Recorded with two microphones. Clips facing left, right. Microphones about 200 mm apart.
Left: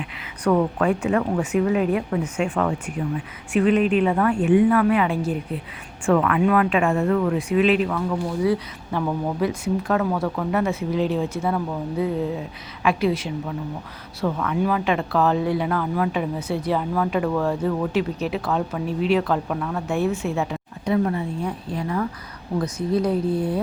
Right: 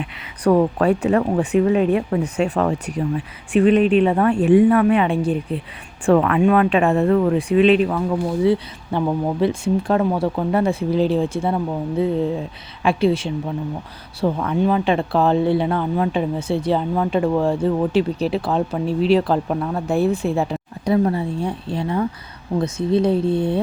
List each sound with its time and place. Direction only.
0.4 s speech: 35° right (ahead or behind)